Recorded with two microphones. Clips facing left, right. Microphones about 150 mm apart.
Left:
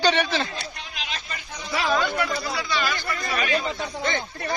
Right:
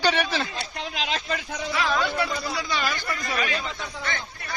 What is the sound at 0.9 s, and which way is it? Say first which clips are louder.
Speech: right 8 dB; 90° right.